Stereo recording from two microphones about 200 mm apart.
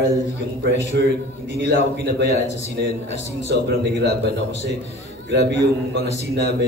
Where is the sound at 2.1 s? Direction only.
60° right (ahead or behind).